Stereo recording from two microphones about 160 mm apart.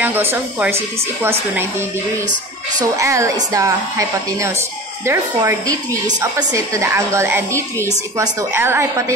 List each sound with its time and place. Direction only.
0.0 s a woman's voice: 15° right (ahead or behind)
3.0 s a woman's voice: 20° right (ahead or behind)